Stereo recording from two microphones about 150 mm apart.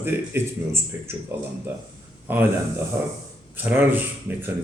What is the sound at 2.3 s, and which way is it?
Speech, 15° right (ahead or behind).